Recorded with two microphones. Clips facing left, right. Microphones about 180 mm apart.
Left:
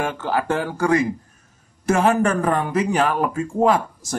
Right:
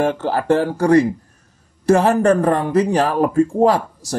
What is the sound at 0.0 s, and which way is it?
Speech, 35° right (ahead or behind).